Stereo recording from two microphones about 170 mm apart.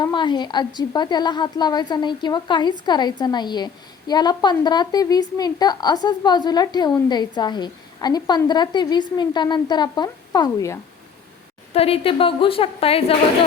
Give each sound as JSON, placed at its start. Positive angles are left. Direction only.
{"t": 0.0, "sound": "a woman's voice", "side_deg": 25}
{"t": 11.7, "sound": "a woman's voice", "side_deg": 35}